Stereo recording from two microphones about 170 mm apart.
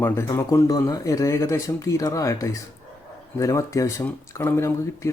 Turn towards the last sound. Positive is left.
turn(degrees=15)  # may be behind; listen again after turning